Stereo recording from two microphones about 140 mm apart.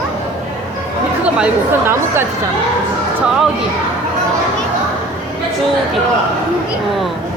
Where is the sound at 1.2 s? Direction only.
10° right (ahead or behind).